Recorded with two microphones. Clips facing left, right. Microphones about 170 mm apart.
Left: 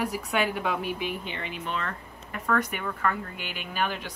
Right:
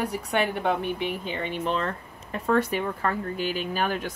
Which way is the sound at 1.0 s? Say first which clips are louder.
Right 4 dB; 35° right (ahead or behind).